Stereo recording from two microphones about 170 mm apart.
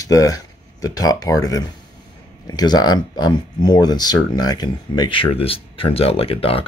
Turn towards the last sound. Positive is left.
turn(degrees=35)  # may be behind; listen again after turning